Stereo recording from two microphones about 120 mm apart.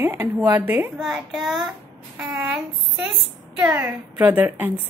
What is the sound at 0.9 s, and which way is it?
A woman's voice, 5° right (ahead or behind).